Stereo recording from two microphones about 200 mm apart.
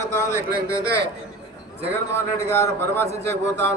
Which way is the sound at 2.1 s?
10° left (ahead or behind).